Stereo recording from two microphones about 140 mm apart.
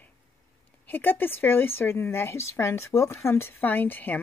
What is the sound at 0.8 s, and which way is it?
Speech, 15° left (ahead or behind).